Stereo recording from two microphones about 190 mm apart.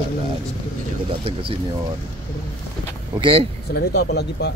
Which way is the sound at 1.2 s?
30° right (ahead or behind).